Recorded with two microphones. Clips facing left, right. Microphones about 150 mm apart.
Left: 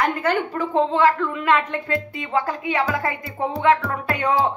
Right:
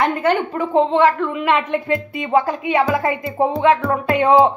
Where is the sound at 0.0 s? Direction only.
25° right (ahead or behind).